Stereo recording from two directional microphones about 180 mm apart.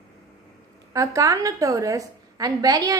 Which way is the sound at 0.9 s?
20° right (ahead or behind).